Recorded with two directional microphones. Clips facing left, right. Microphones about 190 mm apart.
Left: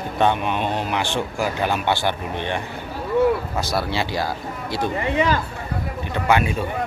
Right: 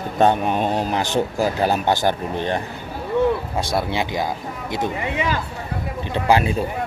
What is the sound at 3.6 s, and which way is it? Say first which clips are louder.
Speech: right 1 dB; 25° right (ahead or behind).